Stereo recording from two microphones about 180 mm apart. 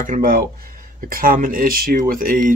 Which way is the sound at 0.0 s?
50° right (ahead or behind).